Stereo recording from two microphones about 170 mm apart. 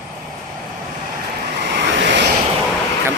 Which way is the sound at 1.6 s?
85° right.